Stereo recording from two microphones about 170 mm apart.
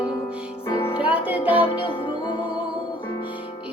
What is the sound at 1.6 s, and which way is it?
Music, 30° left (ahead or behind).